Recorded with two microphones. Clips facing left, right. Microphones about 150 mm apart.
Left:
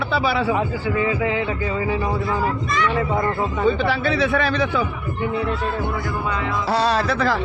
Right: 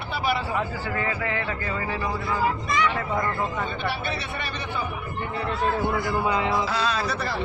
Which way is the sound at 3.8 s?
90° left.